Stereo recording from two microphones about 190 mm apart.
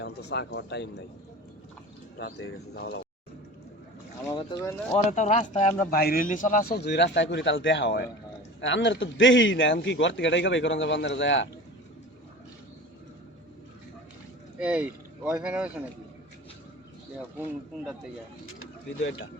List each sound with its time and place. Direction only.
0.0 s speech: 65° left (ahead or behind)
2.1 s a man's voice: 75° left (ahead or behind)
2.7 s speech: 55° left (ahead or behind)
4.3 s speech: 20° left (ahead or behind)
5.1 s speech: 35° left (ahead or behind)
5.9 s a man's voice: 50° left (ahead or behind)
6.7 s a man's voice: 60° left (ahead or behind)
8.6 s a man's voice: 75° left (ahead or behind)
14.6 s speech: 5° right (ahead or behind)
17.3 s speech: 10° right (ahead or behind)
18.4 s speech: 90° left